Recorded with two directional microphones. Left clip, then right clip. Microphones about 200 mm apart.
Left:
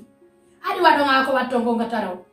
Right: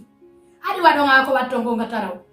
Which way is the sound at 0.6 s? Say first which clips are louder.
Right 1 dB; 20° right (ahead or behind).